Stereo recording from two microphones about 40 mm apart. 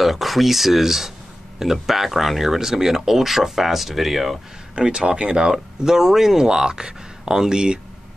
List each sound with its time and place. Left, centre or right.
0.0 s speech: centre
4.7 s speech: right